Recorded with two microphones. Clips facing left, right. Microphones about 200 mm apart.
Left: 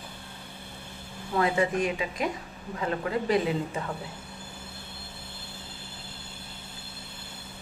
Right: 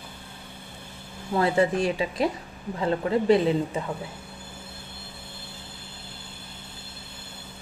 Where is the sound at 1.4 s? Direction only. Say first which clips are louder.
Right 3 dB; 30° right (ahead or behind).